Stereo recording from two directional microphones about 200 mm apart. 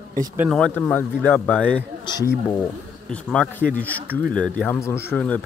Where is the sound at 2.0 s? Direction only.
20° left (ahead or behind).